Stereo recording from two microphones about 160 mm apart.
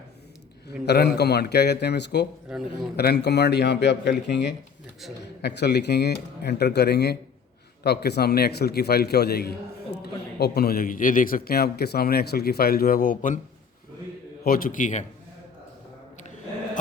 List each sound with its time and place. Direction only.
0.9 s speech: 90° left
2.5 s a man's voice: 5° right (ahead or behind)
2.9 s speech: 85° left
5.4 s a man's voice: 90° left; by 13.4 s 55° left (ahead or behind)
14.4 s a man's voice: 65° left (ahead or behind)